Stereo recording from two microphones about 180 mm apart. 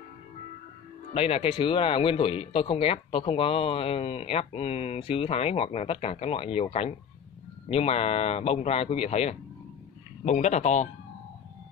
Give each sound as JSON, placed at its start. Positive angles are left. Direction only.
{"t": 1.1, "sound": "speech", "side_deg": 30}